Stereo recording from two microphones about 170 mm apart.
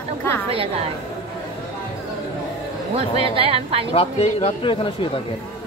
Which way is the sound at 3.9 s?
35° left (ahead or behind).